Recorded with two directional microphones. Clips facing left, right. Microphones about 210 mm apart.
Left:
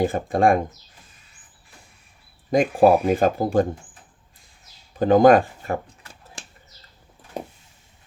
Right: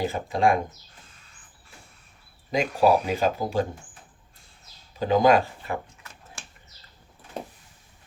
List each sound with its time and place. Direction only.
0.0 s speech: 50° left (ahead or behind)
2.5 s speech: 50° left (ahead or behind)
4.9 s speech: 50° left (ahead or behind)